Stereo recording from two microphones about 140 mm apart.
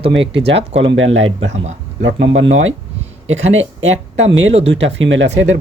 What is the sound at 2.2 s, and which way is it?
Speech, 50° right (ahead or behind).